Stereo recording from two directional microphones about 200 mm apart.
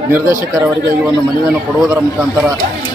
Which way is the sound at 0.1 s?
10° right (ahead or behind).